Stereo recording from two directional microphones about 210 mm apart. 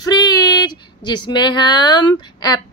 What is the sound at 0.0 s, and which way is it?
Speech, 20° left (ahead or behind).